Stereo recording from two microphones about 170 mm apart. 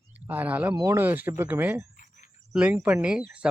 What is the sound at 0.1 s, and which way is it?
Speech, 10° right (ahead or behind).